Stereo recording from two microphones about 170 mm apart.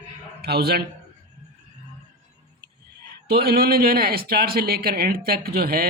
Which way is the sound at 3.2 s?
65° right (ahead or behind).